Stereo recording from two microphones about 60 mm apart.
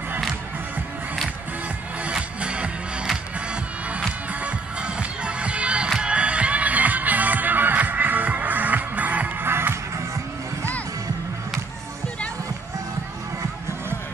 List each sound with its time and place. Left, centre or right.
2.0 s music: centre
4.3 s music: right
9.4 s music: right